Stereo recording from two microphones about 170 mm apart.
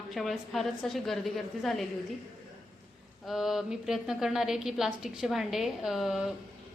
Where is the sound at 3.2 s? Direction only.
Centre (ahead or behind).